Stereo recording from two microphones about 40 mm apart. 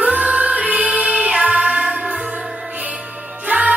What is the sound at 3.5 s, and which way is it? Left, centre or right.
Music, right.